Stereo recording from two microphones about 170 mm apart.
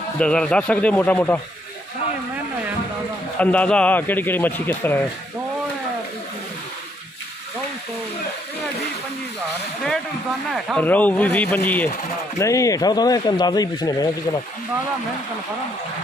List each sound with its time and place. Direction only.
0.2 s a man's voice: 5° left (ahead or behind)
3.3 s a man's voice: 10° left (ahead or behind)
10.5 s a man's voice: 5° left (ahead or behind); by 14.4 s 20° left (ahead or behind)